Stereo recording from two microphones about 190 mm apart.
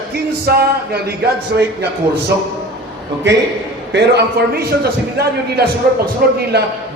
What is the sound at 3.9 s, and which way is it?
A man's voice, 60° right (ahead or behind).